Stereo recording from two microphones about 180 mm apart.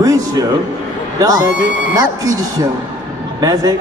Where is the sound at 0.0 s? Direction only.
20° right (ahead or behind).